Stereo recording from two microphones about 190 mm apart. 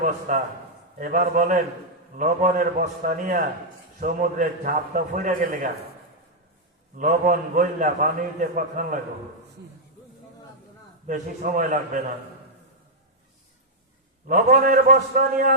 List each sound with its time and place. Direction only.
0.3 s a man's voice: 45° right (ahead or behind)
6.9 s a man's voice: 45° right (ahead or behind)
11.0 s a man's voice: 40° right (ahead or behind)
14.3 s a man's voice: 45° right (ahead or behind)